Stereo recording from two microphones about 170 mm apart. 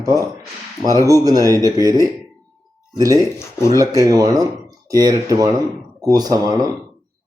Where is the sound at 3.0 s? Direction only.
20° right (ahead or behind).